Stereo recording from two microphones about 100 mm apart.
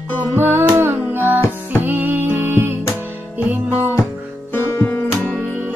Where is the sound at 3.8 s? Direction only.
25° left (ahead or behind).